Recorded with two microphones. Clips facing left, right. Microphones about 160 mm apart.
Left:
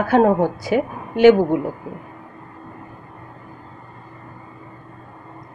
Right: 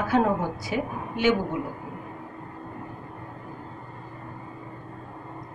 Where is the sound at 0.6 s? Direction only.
85° left.